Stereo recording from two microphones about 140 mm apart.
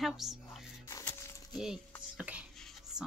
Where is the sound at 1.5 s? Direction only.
5° right (ahead or behind).